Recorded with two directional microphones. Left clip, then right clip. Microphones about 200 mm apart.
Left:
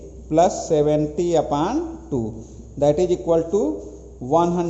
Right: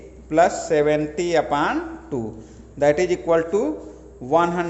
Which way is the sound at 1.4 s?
25° right (ahead or behind).